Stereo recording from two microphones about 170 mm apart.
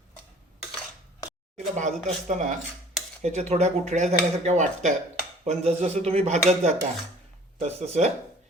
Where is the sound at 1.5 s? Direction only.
45° right (ahead or behind).